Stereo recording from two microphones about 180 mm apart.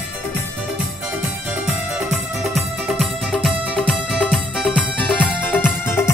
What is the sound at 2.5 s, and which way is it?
Music, centre (ahead or behind).